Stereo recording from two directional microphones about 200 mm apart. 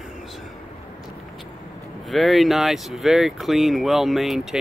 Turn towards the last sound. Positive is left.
turn(degrees=0)  # may be behind; listen again after turning